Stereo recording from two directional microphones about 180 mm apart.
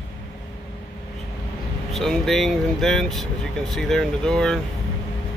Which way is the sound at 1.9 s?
Centre (ahead or behind).